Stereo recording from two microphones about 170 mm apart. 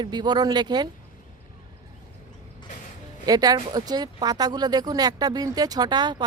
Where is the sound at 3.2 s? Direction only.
20° right (ahead or behind).